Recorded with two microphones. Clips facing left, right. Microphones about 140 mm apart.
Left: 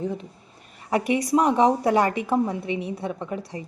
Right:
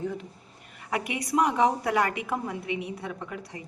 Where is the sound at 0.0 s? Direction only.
20° left (ahead or behind).